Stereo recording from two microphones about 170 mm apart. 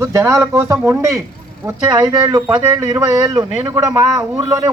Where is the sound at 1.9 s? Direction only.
25° right (ahead or behind).